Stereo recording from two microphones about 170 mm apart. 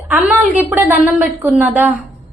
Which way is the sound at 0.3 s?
10° right (ahead or behind).